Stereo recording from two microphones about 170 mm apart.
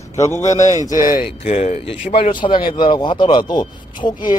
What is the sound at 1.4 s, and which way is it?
Speech, 40° left (ahead or behind).